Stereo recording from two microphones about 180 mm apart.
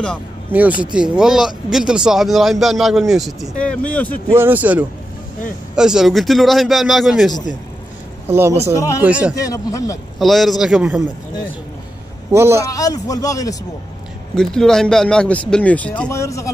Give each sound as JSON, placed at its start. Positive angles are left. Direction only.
{"t": 0.5, "sound": "speech", "side_deg": -10}
{"t": 4.3, "sound": "speech", "side_deg": -10}
{"t": 8.3, "sound": "speech", "side_deg": -15}
{"t": 8.7, "sound": "a man's voice", "side_deg": 20}
{"t": 10.1, "sound": "speech", "side_deg": 0}
{"t": 12.3, "sound": "speech", "side_deg": -15}
{"t": 12.6, "sound": "a man's voice", "side_deg": 20}
{"t": 14.3, "sound": "speech", "side_deg": 0}